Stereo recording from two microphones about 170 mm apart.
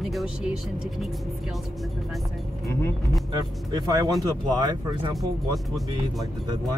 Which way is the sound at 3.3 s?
25° right (ahead or behind).